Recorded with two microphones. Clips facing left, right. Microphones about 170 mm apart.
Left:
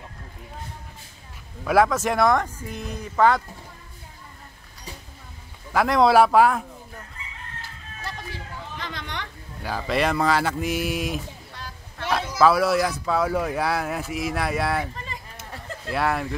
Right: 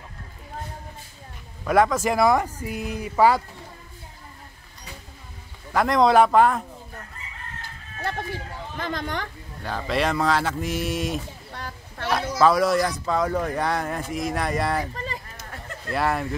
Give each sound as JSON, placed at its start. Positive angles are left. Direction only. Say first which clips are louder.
{"t": 1.6, "sound": "speech", "louder": "even", "side_deg": 0}
{"t": 5.7, "sound": "speech", "louder": "even", "side_deg": 5}
{"t": 8.0, "sound": "music", "louder": "right 6 dB", "side_deg": -55}
{"t": 9.6, "sound": "speech", "louder": "left 1 dB", "side_deg": 5}
{"t": 15.9, "sound": "speech", "louder": "even", "side_deg": 0}